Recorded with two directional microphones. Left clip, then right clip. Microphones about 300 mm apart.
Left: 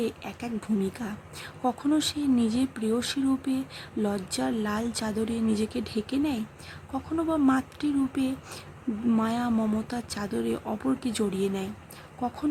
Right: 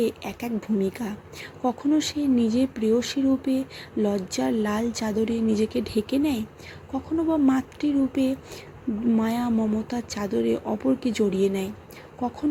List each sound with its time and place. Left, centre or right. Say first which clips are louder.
0.0 s speech: right 5 dB; centre